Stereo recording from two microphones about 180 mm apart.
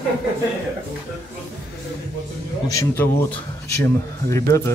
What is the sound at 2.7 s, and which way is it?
Speech, 15° left (ahead or behind).